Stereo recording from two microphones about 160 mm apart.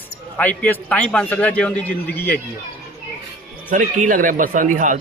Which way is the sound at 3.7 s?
55° right (ahead or behind).